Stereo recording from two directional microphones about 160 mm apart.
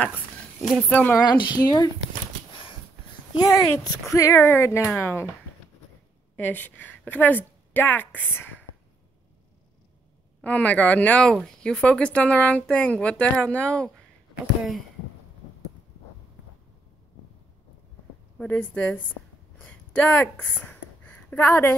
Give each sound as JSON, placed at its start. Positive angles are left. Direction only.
{"t": 0.6, "sound": "speech", "side_deg": 0}
{"t": 1.5, "sound": "speech", "side_deg": 25}
{"t": 3.3, "sound": "speech", "side_deg": 20}
{"t": 6.3, "sound": "a woman's voice", "side_deg": 10}
{"t": 10.4, "sound": "speech", "side_deg": 10}
{"t": 18.4, "sound": "speech", "side_deg": 10}
{"t": 19.6, "sound": "a sound", "side_deg": 10}